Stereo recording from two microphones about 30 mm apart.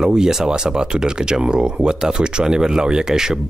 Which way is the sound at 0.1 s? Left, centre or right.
Centre.